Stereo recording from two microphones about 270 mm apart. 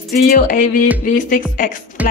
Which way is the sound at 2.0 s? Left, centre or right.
Centre.